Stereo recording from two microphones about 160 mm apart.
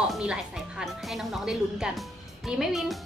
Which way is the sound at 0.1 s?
5° right (ahead or behind).